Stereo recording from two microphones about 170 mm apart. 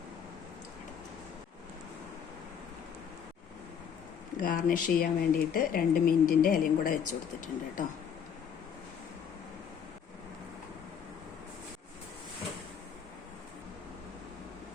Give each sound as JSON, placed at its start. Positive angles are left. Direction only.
{"t": 4.4, "sound": "a woman's voice", "side_deg": 55}